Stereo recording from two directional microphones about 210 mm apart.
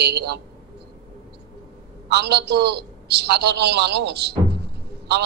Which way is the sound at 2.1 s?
50° right (ahead or behind).